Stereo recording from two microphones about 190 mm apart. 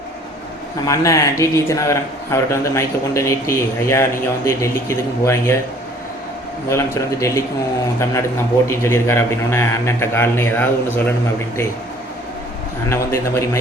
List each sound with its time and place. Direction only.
0.9 s speech: 15° left (ahead or behind)
6.7 s speech: 15° left (ahead or behind)
8.6 s speech: 15° left (ahead or behind)
12.9 s speech: 15° left (ahead or behind)